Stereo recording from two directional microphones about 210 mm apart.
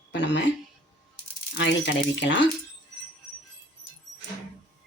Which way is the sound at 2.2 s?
60° left (ahead or behind).